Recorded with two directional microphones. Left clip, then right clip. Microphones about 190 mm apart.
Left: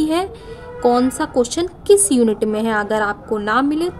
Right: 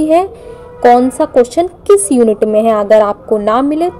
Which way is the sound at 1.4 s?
10° right (ahead or behind).